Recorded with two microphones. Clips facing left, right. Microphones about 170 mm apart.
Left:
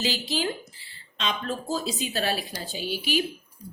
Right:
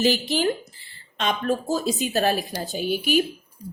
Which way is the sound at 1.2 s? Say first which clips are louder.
Right 6 dB; 50° right (ahead or behind).